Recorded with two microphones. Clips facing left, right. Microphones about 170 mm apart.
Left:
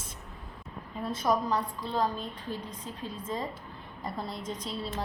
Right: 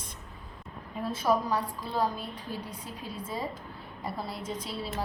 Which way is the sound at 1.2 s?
10° right (ahead or behind).